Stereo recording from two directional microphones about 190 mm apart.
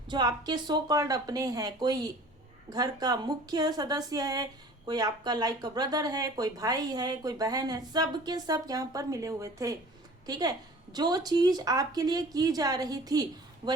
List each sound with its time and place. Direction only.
0.1 s speech: 20° right (ahead or behind)